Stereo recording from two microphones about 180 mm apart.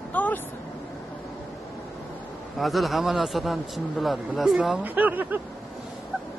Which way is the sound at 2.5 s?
Centre (ahead or behind).